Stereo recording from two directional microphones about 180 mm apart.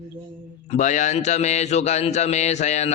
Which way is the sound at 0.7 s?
40° left (ahead or behind).